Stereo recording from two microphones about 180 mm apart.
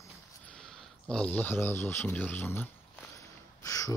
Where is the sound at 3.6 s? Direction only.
20° left (ahead or behind).